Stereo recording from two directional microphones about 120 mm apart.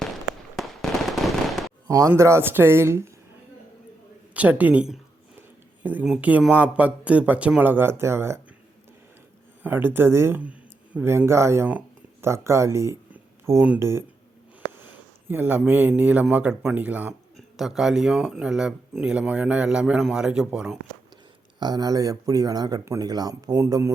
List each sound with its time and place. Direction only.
0.5 s fireworks: centre (ahead or behind)
1.9 s speech: 25° right (ahead or behind)
4.4 s speech: 15° right (ahead or behind)
9.6 s speech: 15° right (ahead or behind)
15.3 s speech: 15° right (ahead or behind)
17.3 s speech: 5° right (ahead or behind)
21.6 s speech: 35° right (ahead or behind)